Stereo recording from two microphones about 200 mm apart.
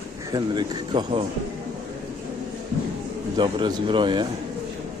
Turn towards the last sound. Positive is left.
turn(degrees=-25)  # may be behind; listen again after turning